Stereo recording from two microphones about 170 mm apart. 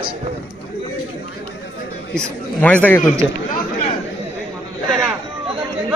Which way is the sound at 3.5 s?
55° left (ahead or behind).